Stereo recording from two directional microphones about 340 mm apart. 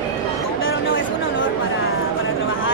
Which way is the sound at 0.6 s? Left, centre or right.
Left.